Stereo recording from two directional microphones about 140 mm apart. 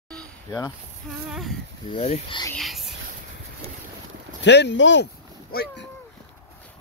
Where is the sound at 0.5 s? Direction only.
20° left (ahead or behind).